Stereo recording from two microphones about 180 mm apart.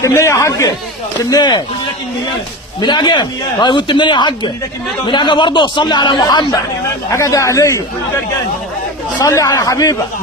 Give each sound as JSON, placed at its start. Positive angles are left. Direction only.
{"t": 0.0, "sound": "a man's voice", "side_deg": 15}
{"t": 2.8, "sound": "a man's voice", "side_deg": 25}
{"t": 9.1, "sound": "speech", "side_deg": 20}